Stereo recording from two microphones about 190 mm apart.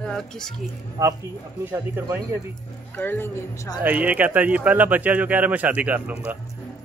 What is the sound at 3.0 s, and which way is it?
Speech, 10° left (ahead or behind).